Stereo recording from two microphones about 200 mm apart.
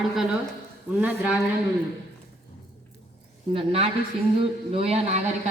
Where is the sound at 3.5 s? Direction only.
30° right (ahead or behind).